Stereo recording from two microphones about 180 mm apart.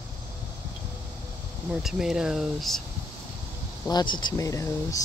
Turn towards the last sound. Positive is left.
turn(degrees=15)  # may be behind; listen again after turning